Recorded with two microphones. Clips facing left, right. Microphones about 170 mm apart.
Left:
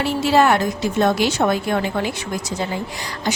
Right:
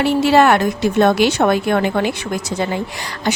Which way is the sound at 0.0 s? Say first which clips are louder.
Right 4 dB; 65° right (ahead or behind).